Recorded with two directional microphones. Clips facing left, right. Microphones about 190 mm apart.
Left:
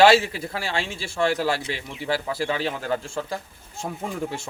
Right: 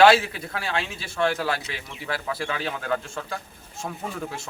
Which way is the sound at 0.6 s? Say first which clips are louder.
Right 1 dB; 30° left (ahead or behind).